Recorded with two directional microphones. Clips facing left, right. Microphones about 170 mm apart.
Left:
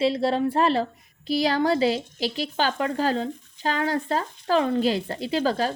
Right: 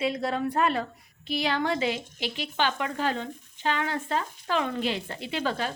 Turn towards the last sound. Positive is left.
turn(degrees=40)  # may be behind; listen again after turning